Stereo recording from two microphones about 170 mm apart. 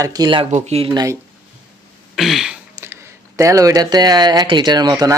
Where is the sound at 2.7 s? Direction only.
15° right (ahead or behind).